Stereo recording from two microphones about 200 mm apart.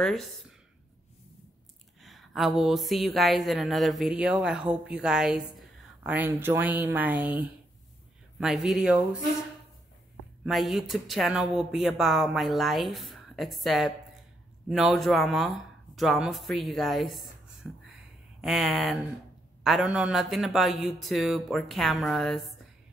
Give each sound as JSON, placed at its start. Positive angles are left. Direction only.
{"t": 0.0, "sound": "speech", "side_deg": 0}
{"t": 2.0, "sound": "speech", "side_deg": 0}
{"t": 10.4, "sound": "speech", "side_deg": 0}
{"t": 17.6, "sound": "a sound", "side_deg": 0}
{"t": 18.4, "sound": "speech", "side_deg": 0}